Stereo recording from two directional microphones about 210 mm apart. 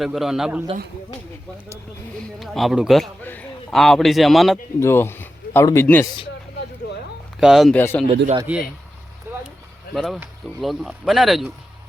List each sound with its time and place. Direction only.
0.0 s a man's voice: centre (ahead or behind)
2.4 s a man's voice: centre (ahead or behind)
4.8 s speech: 10° left (ahead or behind)
7.3 s speech: centre (ahead or behind)
7.8 s speech: 10° left (ahead or behind)
8.0 s a man's voice: 25° right (ahead or behind)
9.9 s a man's voice: centre (ahead or behind)